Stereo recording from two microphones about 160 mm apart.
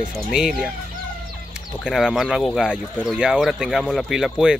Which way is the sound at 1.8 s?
Centre (ahead or behind).